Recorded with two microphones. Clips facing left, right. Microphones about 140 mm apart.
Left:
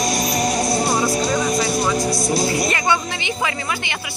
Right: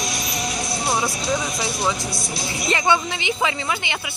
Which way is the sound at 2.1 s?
Centre (ahead or behind).